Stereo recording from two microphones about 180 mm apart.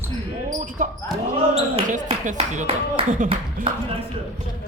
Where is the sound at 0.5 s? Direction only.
45° right (ahead or behind).